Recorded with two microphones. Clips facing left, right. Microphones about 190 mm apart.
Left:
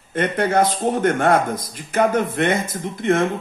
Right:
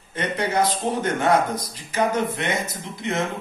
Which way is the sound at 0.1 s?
55° left (ahead or behind).